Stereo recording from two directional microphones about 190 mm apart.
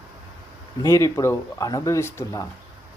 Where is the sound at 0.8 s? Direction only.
15° left (ahead or behind).